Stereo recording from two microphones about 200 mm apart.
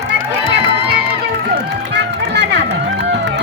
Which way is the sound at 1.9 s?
60° right (ahead or behind).